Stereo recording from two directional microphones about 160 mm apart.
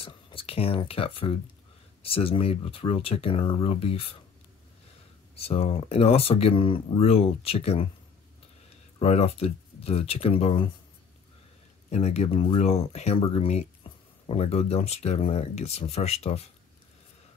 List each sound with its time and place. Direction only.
0.0 s speech: 35° left (ahead or behind)
5.3 s speech: 40° left (ahead or behind)
9.0 s speech: 40° left (ahead or behind)
11.9 s speech: 45° left (ahead or behind)